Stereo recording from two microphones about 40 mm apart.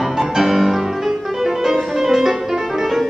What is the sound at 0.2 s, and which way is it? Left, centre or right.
Music, centre.